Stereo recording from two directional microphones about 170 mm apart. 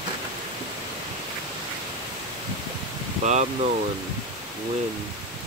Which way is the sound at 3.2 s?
45° right (ahead or behind).